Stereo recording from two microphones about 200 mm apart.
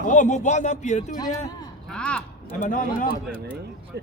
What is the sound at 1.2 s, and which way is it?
Speech, 20° left (ahead or behind).